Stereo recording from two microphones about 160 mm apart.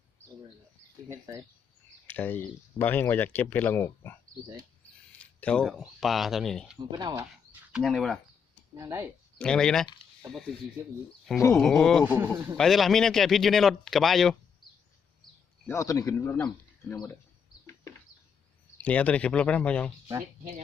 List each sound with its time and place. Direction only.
1.0 s speech: 25° right (ahead or behind)
2.1 s speech: 10° left (ahead or behind)
5.2 s speech: 10° left (ahead or behind)
6.9 s speech: 25° right (ahead or behind)
7.7 s speech: centre (ahead or behind)
8.7 s a man's voice: 20° right (ahead or behind)
9.4 s speech: 5° left (ahead or behind)
11.5 s speech: centre (ahead or behind)
12.0 s a man's voice: 10° right (ahead or behind)
12.5 s speech: centre (ahead or behind)
15.6 s speech: 20° left (ahead or behind)
18.8 s speech: 10° left (ahead or behind)